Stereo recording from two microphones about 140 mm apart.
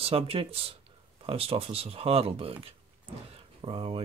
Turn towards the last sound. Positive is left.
turn(degrees=-40)  # may be behind; listen again after turning